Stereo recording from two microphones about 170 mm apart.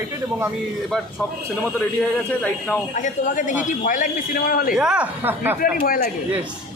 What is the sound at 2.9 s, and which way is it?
Speech, 45° left (ahead or behind).